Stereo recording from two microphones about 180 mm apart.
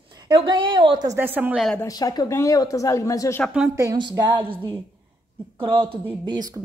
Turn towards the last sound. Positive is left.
turn(degrees=-20)  # may be behind; listen again after turning